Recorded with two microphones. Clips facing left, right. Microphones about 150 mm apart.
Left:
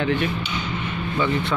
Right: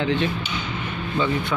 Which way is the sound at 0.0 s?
20° right (ahead or behind).